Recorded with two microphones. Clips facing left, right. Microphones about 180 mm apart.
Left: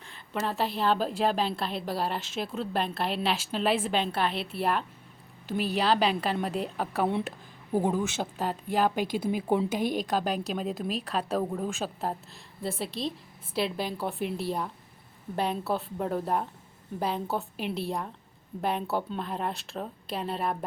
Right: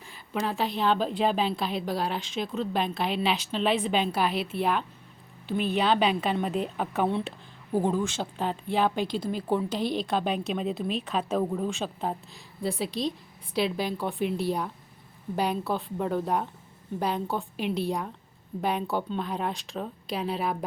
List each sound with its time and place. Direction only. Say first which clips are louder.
0.3 s a woman's voice: right 1 dB; centre (ahead or behind)
7.7 s speech: right 1 dB; 15° left (ahead or behind)
9.8 s a woman's voice: even; 45° left (ahead or behind)
10.1 s a woman's voice: right 1 dB; centre (ahead or behind)